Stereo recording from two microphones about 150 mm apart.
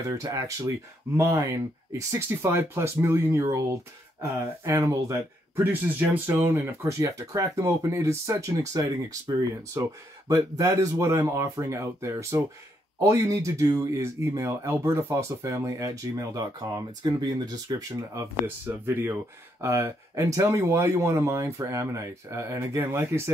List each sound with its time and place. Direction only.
0.2 s speech: 20° right (ahead or behind)